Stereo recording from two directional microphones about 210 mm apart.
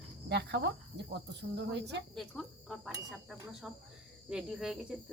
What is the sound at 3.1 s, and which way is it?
Speech, 5° right (ahead or behind).